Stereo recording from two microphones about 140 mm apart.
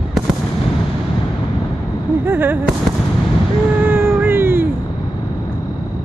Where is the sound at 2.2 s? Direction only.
15° right (ahead or behind).